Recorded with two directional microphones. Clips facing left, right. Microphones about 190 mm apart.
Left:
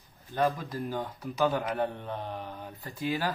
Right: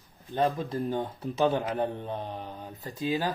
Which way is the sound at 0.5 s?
25° right (ahead or behind).